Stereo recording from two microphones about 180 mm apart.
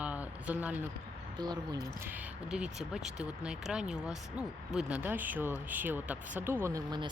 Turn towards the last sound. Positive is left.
turn(degrees=-20)  # may be behind; listen again after turning